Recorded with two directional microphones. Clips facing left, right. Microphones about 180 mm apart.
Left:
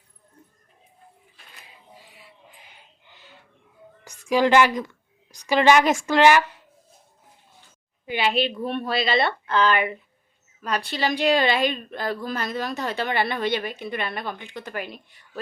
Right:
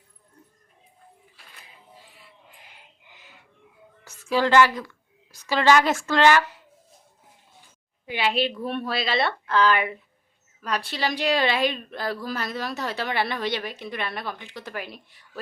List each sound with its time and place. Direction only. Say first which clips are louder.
4.3 s a woman's voice: left 1 dB; 15° left (ahead or behind)
8.0 s a woman's voice: left 1 dB; centre (ahead or behind)